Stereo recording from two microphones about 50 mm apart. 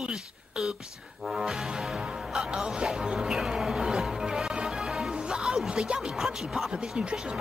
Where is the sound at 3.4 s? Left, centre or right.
Centre.